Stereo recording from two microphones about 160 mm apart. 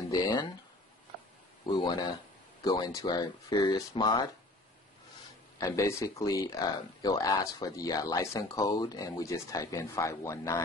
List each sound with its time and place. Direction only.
0.1 s a sound: 25° left (ahead or behind)
1.7 s speech: 25° left (ahead or behind)
5.6 s speech: 20° left (ahead or behind)